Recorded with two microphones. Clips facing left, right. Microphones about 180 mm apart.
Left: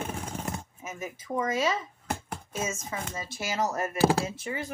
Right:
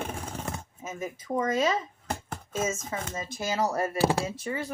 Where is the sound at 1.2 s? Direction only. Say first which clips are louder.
Right 2 dB; 35° right (ahead or behind).